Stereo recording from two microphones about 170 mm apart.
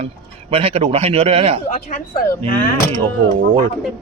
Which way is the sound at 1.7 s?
50° left (ahead or behind).